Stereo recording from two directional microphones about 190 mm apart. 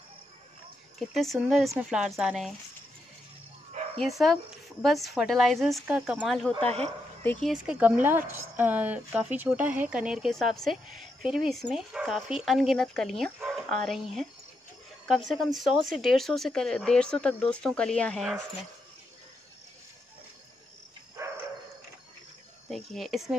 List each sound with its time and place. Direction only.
0.9 s a woman's voice: centre (ahead or behind)
4.0 s a woman's voice: centre (ahead or behind)
21.2 s dog: 15° right (ahead or behind)
22.7 s a woman's voice: centre (ahead or behind)